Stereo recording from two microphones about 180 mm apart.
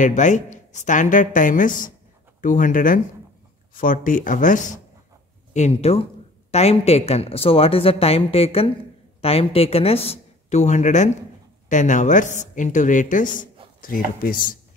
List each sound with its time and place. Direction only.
0.0 s a woman's voice: 45° left (ahead or behind)